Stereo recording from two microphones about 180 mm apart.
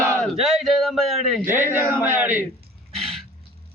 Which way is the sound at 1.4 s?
10° right (ahead or behind).